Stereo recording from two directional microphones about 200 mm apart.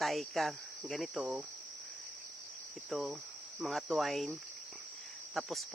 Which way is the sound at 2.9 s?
Centre (ahead or behind).